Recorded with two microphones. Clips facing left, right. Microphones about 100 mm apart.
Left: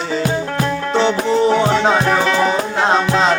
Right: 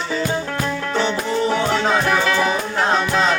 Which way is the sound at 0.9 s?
25° left (ahead or behind).